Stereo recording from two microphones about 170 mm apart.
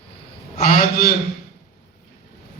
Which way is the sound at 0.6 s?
60° left (ahead or behind).